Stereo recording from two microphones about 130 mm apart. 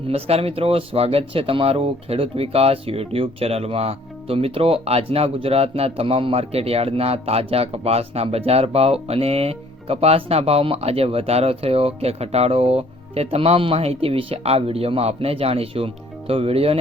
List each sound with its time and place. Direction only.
0.1 s speech: 50° right (ahead or behind)